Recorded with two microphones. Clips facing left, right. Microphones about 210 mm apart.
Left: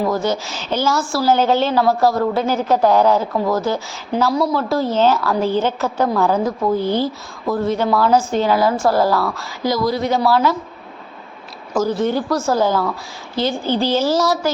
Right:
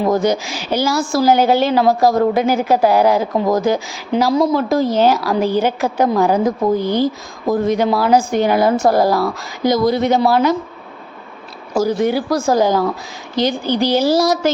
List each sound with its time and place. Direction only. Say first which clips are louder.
0.1 s a woman's voice: right 4 dB; 15° right (ahead or behind)
11.7 s a woman's voice: right 2 dB; 10° right (ahead or behind)